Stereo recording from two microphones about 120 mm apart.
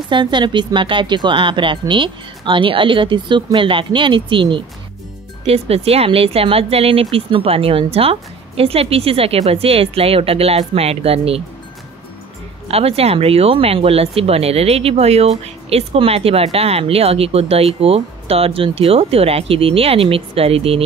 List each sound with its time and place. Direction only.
0.1 s speech: 40° right (ahead or behind)
5.5 s speech: 55° right (ahead or behind)
12.6 s speech: 55° right (ahead or behind)